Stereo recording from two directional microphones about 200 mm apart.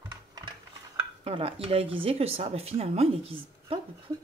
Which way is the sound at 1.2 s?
30° right (ahead or behind).